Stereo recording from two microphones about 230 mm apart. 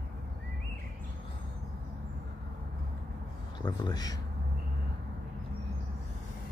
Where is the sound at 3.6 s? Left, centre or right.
Centre.